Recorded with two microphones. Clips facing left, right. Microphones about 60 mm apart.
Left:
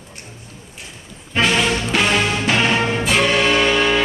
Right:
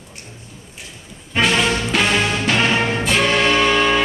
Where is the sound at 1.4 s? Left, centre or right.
Centre.